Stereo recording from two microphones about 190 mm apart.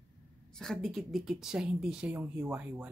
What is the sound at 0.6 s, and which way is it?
A woman's voice, centre (ahead or behind).